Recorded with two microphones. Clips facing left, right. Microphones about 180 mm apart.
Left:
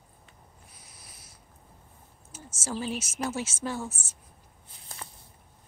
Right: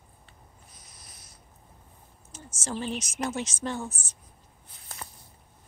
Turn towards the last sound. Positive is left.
turn(degrees=5)  # may be behind; listen again after turning